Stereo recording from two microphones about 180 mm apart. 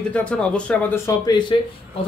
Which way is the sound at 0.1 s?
5° left (ahead or behind).